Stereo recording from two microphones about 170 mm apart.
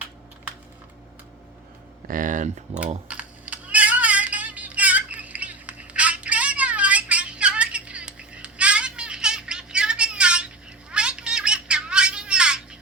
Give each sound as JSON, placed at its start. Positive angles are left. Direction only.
{"t": 2.0, "sound": "speech", "side_deg": -50}
{"t": 2.7, "sound": "speech", "side_deg": -40}
{"t": 3.1, "sound": "typing", "side_deg": -10}
{"t": 10.9, "sound": "a sound", "side_deg": -5}